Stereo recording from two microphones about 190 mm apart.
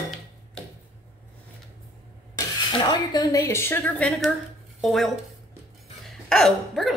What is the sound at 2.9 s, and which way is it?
Speech, 20° left (ahead or behind).